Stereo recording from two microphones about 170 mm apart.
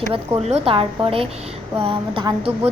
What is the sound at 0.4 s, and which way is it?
A woman's voice, 35° right (ahead or behind).